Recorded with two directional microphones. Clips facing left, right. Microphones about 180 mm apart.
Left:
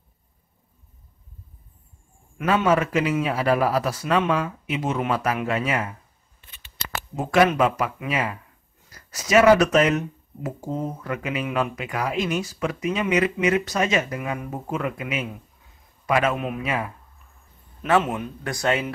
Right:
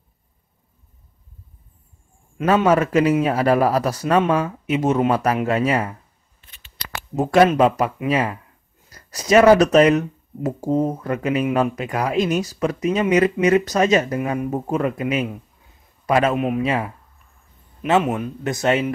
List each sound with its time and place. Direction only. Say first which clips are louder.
2.4 s speech: right 4 dB; 40° right (ahead or behind)
7.2 s speech: right 4 dB; 35° right (ahead or behind)
8.9 s speech: right 4 dB; 35° right (ahead or behind)
18.1 s speech: right 5 dB; 20° right (ahead or behind)